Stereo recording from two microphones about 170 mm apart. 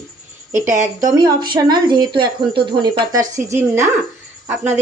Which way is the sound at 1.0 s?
20° right (ahead or behind).